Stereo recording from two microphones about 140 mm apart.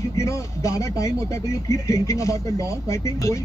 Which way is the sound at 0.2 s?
20° left (ahead or behind).